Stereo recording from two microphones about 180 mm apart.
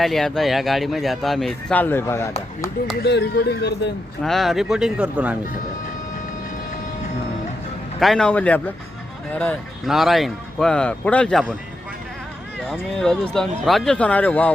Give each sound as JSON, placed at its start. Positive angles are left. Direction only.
{"t": 0.0, "sound": "speech", "side_deg": 0}
{"t": 3.0, "sound": "speech", "side_deg": 70}
{"t": 4.2, "sound": "speech", "side_deg": 0}
{"t": 7.9, "sound": "a man's voice", "side_deg": 0}
{"t": 12.6, "sound": "speech", "side_deg": 5}